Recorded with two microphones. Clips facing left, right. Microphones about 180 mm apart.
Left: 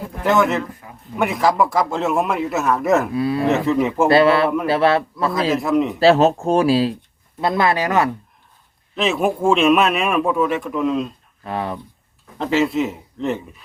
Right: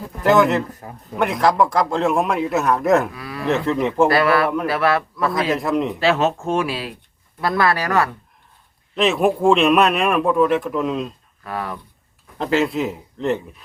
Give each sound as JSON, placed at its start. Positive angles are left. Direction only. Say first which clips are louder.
{"t": 0.3, "sound": "speech", "louder": "right 2 dB", "side_deg": 0}
{"t": 0.8, "sound": "a sound", "louder": "right 4 dB", "side_deg": -40}
{"t": 1.2, "sound": "speech", "louder": "even", "side_deg": 5}
{"t": 3.1, "sound": "a man's voice", "louder": "left 12 dB", "side_deg": 25}
{"t": 3.4, "sound": "speech", "louder": "right 1 dB", "side_deg": 5}
{"t": 4.1, "sound": "a man's voice", "louder": "left 3 dB", "side_deg": 25}
{"t": 5.3, "sound": "speech", "louder": "left 3 dB", "side_deg": 0}
{"t": 6.0, "sound": "speech", "louder": "left 5 dB", "side_deg": 35}
{"t": 7.4, "sound": "a man's voice", "louder": "left 1 dB", "side_deg": 20}
{"t": 9.0, "sound": "speech", "louder": "right 2 dB", "side_deg": 0}
{"t": 11.4, "sound": "a man's voice", "louder": "left 3 dB", "side_deg": 25}
{"t": 12.4, "sound": "speech", "louder": "left 1 dB", "side_deg": 0}